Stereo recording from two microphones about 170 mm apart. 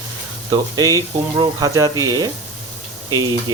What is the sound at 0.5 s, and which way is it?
Speech, 20° right (ahead or behind).